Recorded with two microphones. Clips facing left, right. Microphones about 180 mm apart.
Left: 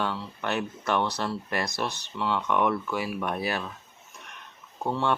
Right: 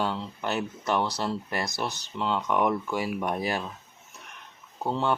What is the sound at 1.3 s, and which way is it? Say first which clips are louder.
Speech: left 1 dB; 25° right (ahead or behind).